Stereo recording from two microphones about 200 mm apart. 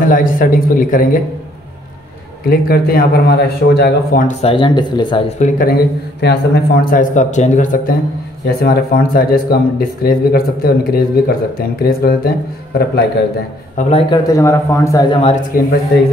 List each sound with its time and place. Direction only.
0.1 s speech: 45° left (ahead or behind)
2.5 s speech: 50° left (ahead or behind); by 5.2 s 20° left (ahead or behind)
5.4 s speech: 45° left (ahead or behind)
13.7 s speech: 35° left (ahead or behind)
14.1 s a man's voice: 15° left (ahead or behind)
15.5 s speech: 45° left (ahead or behind)